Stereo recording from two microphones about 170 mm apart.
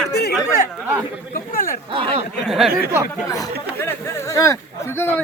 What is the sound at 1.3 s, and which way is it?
Speech, 55° left (ahead or behind).